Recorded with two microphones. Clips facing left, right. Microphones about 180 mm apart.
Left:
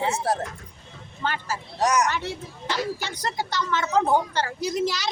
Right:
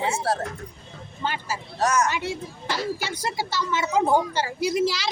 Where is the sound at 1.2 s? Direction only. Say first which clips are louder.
Even; 15° right (ahead or behind).